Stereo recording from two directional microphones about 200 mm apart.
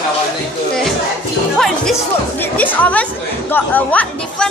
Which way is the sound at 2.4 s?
10° left (ahead or behind).